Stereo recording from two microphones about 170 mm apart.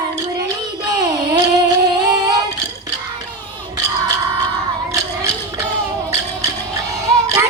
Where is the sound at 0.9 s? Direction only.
25° right (ahead or behind).